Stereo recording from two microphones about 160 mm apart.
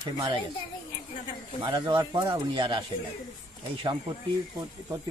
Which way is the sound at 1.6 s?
30° right (ahead or behind).